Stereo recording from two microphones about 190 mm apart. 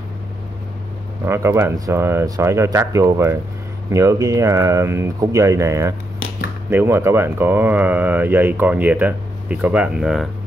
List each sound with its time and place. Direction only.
1.2 s speech: 15° right (ahead or behind)